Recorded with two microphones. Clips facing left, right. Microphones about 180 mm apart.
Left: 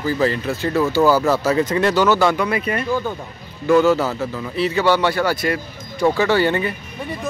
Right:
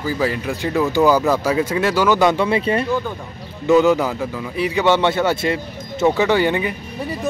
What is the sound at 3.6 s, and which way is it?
Speech, 15° right (ahead or behind).